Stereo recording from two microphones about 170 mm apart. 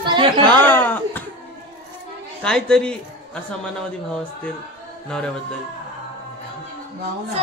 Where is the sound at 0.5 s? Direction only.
10° left (ahead or behind).